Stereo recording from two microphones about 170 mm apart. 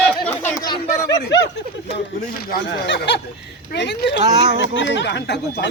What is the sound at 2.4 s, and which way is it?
Speech, 80° left.